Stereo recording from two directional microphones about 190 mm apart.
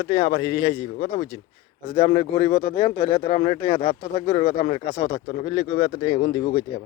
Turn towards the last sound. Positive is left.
turn(degrees=30)  # may be behind; listen again after turning